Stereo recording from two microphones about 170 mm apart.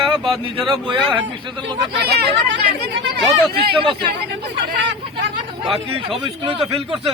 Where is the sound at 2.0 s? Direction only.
75° right (ahead or behind).